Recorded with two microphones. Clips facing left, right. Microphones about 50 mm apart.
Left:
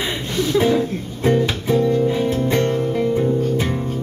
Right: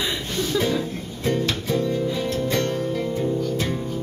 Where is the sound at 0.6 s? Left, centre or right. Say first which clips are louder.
Left 8 dB; left.